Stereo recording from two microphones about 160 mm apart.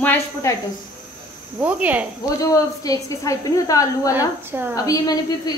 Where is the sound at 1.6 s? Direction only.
10° right (ahead or behind).